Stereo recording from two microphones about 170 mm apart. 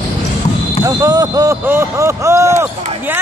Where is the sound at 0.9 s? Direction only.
20° right (ahead or behind).